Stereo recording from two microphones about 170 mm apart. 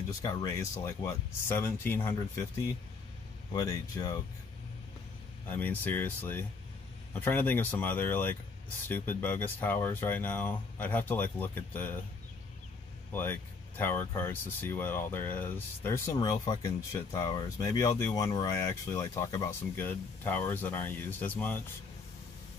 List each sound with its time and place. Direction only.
0.2 s speech: 25° left (ahead or behind)
3.5 s speech: 20° left (ahead or behind)
5.5 s speech: 10° left (ahead or behind)
13.1 s speech: 10° left (ahead or behind)